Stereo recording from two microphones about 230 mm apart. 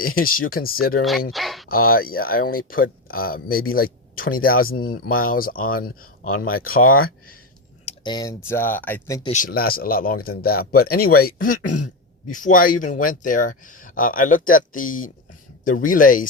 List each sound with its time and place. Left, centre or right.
0.0 s speech: left
1.3 s speech: centre
1.6 s speech: left
7.9 s a sound: centre
8.4 s speech: centre
9.3 s speech: left